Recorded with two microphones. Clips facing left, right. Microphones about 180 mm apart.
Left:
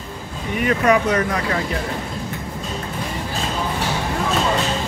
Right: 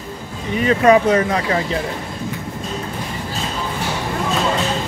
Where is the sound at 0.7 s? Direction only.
30° right (ahead or behind).